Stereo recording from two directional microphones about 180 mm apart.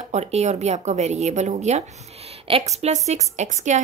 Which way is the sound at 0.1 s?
40° right (ahead or behind).